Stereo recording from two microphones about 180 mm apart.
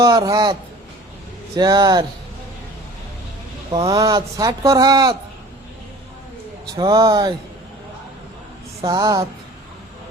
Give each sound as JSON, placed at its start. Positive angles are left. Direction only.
{"t": 0.0, "sound": "speech", "side_deg": -20}
{"t": 1.5, "sound": "speech", "side_deg": -20}
{"t": 3.7, "sound": "speech", "side_deg": -20}
{"t": 6.7, "sound": "speech", "side_deg": -20}
{"t": 8.9, "sound": "speech", "side_deg": -20}